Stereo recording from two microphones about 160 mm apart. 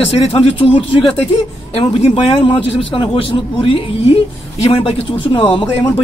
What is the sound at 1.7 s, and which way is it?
A man's voice, 35° left (ahead or behind).